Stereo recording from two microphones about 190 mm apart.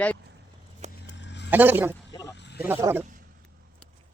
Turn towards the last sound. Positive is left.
turn(degrees=-10)  # may be behind; listen again after turning